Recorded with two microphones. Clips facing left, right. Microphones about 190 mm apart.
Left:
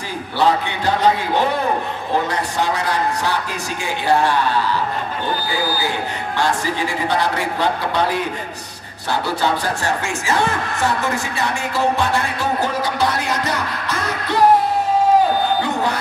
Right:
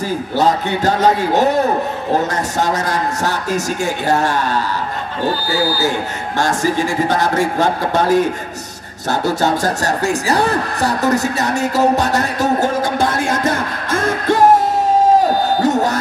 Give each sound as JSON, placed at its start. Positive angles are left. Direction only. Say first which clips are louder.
{"t": 0.4, "sound": "a man's voice", "louder": "right 2 dB", "side_deg": -45}
{"t": 15.6, "sound": "music", "louder": "right 6 dB", "side_deg": -45}